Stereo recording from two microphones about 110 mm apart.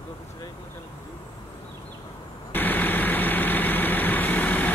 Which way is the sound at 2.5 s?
15° left (ahead or behind).